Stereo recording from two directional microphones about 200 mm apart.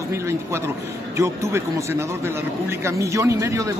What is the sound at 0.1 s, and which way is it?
A man's voice, 15° right (ahead or behind).